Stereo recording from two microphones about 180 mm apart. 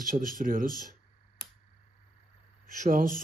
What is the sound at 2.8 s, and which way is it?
Speech, 45° right (ahead or behind).